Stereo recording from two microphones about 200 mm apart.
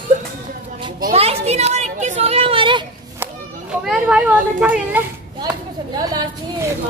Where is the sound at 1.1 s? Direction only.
30° right (ahead or behind).